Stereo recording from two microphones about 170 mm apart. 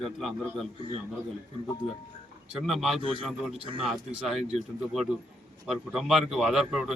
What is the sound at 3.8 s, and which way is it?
Speech, centre (ahead or behind).